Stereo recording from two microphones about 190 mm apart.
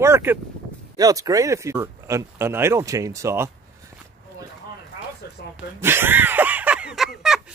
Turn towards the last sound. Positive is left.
turn(degrees=0)  # may be behind; listen again after turning